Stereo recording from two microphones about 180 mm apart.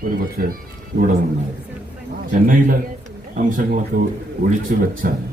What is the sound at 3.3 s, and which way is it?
A man's voice, 50° right (ahead or behind).